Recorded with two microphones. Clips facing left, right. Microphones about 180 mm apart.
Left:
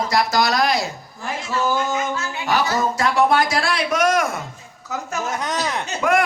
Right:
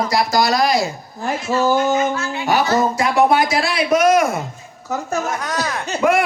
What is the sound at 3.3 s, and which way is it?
Speech, 10° right (ahead or behind).